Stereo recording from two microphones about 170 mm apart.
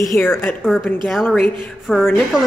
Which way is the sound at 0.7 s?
Centre (ahead or behind).